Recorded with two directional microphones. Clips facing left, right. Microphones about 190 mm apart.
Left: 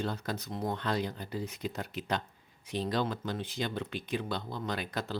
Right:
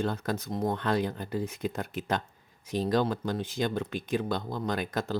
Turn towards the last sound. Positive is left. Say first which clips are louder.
# right 5 dB
turn(degrees=-45)  # may be behind; listen again after turning